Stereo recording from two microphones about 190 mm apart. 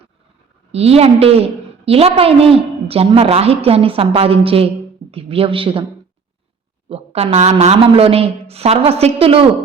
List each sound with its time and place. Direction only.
0.7 s a woman's voice: 30° right (ahead or behind)
6.8 s a woman's voice: 30° right (ahead or behind)